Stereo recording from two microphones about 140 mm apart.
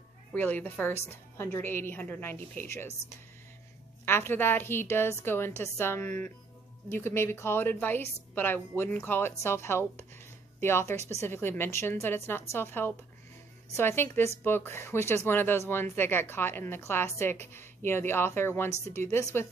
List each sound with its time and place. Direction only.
0.3 s speech: 15° left (ahead or behind)
4.0 s speech: 15° left (ahead or behind)